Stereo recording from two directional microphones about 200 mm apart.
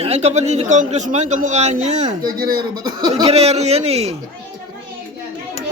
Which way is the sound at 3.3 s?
30° right (ahead or behind).